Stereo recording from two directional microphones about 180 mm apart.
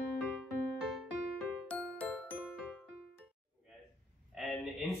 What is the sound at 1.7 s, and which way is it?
Music, 5° left (ahead or behind).